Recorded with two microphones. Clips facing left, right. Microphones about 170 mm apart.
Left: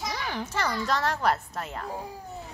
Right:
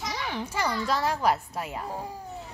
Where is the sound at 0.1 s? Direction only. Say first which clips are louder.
Even; centre (ahead or behind).